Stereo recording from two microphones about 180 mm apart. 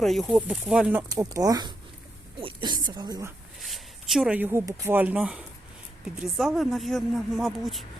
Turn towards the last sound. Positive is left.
turn(degrees=0)  # may be behind; listen again after turning